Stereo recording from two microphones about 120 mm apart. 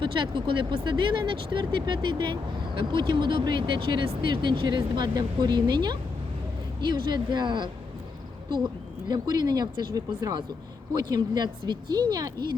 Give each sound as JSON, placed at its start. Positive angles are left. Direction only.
{"t": 0.0, "sound": "speech", "side_deg": -45}